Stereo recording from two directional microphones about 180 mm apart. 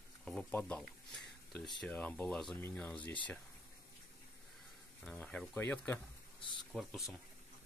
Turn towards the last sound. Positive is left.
turn(degrees=0)  # may be behind; listen again after turning